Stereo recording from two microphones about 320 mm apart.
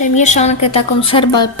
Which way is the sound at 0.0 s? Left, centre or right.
Left.